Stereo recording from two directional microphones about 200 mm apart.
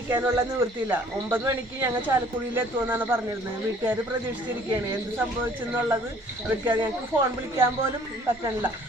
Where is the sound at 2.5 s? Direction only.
10° right (ahead or behind).